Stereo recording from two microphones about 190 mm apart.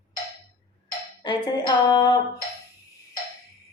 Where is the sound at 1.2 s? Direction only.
20° left (ahead or behind).